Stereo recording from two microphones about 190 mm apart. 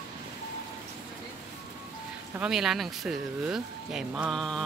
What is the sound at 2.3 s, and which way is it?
Speech, 5° right (ahead or behind).